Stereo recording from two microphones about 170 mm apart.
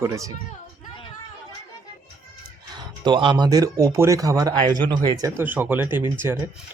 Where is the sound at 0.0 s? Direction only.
20° right (ahead or behind).